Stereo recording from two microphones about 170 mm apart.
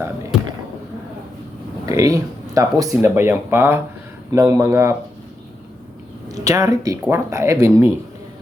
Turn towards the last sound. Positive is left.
turn(degrees=-15)  # may be behind; listen again after turning